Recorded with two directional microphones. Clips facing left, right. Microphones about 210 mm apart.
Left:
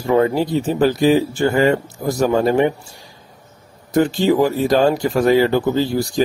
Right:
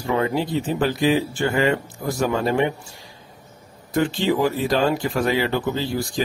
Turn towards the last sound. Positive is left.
turn(degrees=40)  # may be behind; listen again after turning